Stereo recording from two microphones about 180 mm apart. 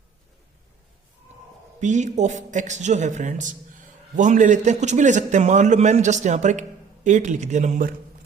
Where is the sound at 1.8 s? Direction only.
40° right (ahead or behind).